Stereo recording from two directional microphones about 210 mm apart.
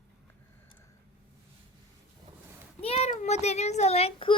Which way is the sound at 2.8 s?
30° left (ahead or behind).